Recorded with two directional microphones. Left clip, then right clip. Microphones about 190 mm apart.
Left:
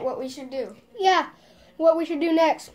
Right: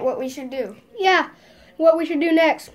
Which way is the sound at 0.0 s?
30° right (ahead or behind).